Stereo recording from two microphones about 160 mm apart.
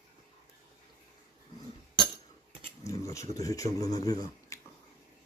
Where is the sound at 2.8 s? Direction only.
20° left (ahead or behind).